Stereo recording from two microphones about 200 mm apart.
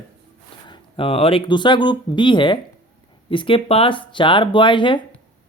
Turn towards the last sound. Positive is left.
turn(degrees=25)  # may be behind; listen again after turning